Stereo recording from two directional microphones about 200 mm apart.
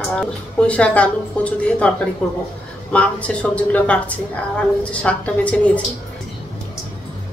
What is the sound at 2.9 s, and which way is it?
Speech, 5° left (ahead or behind).